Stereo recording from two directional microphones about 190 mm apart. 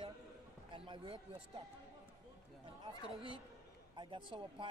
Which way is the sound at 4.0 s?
25° right (ahead or behind).